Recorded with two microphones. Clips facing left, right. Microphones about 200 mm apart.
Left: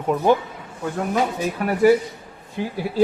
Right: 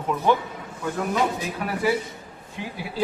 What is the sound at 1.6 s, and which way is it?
Speech, 50° left (ahead or behind).